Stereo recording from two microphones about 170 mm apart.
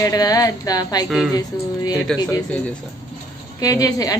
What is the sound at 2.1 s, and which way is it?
Speech, centre (ahead or behind).